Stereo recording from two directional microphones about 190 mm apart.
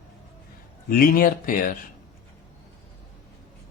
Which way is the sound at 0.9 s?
50° left (ahead or behind).